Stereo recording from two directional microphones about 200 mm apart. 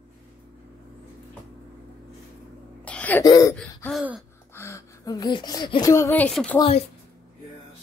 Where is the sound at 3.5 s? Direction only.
5° left (ahead or behind).